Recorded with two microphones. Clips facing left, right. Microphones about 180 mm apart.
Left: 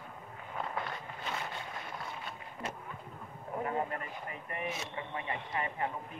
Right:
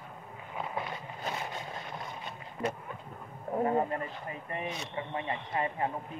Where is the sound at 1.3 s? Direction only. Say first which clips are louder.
Right 3 dB; 40° right (ahead or behind).